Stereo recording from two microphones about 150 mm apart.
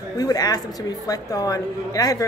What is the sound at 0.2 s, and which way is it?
A woman's voice, 25° left (ahead or behind).